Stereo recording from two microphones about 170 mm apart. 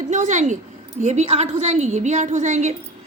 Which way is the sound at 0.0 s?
45° right (ahead or behind).